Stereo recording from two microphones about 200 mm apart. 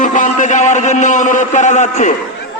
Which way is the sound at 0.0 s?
40° left (ahead or behind).